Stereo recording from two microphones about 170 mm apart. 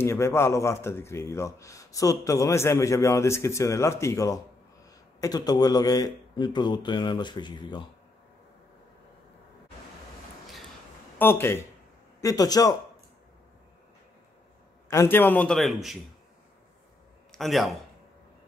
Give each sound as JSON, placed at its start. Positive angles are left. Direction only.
{"t": 0.0, "sound": "a man's voice", "side_deg": 15}
{"t": 11.1, "sound": "a man's voice", "side_deg": 15}
{"t": 14.9, "sound": "speech", "side_deg": 15}
{"t": 17.3, "sound": "a man's voice", "side_deg": 0}